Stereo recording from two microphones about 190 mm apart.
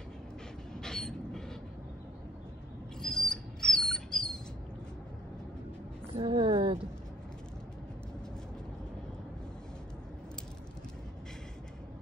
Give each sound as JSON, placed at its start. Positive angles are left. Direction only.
{"t": 0.7, "sound": "train", "side_deg": 5}
{"t": 3.0, "sound": "bird", "side_deg": 0}
{"t": 6.1, "sound": "a sound", "side_deg": -25}